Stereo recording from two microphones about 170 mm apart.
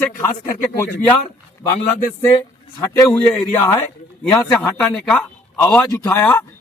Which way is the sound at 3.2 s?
10° left (ahead or behind).